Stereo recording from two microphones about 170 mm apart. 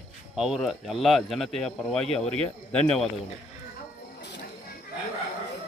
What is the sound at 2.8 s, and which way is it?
Speech, 5° left (ahead or behind).